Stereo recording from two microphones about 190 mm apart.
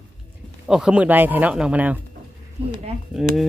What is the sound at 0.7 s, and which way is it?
Speech, 5° right (ahead or behind).